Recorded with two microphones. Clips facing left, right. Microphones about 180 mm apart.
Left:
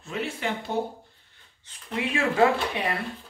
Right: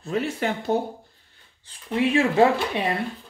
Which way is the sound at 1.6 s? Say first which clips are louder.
Right 7 dB; 30° right (ahead or behind).